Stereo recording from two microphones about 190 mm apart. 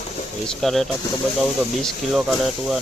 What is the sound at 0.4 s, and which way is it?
Speech, centre (ahead or behind).